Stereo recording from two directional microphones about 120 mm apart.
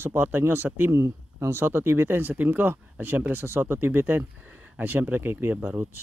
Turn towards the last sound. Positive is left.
turn(degrees=-15)  # may be behind; listen again after turning